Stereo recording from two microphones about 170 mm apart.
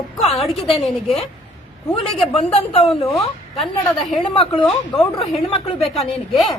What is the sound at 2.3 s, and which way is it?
Speech, 35° left (ahead or behind).